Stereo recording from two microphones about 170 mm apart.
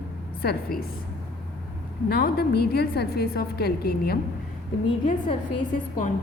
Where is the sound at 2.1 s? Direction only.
70° left (ahead or behind).